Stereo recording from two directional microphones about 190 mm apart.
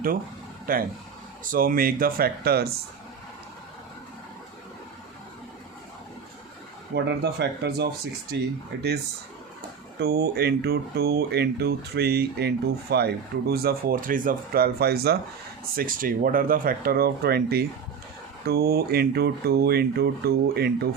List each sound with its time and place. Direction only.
0.7 s speech: 45° right (ahead or behind)
6.9 s speech: 65° right (ahead or behind)
10.0 s speech: 55° right (ahead or behind)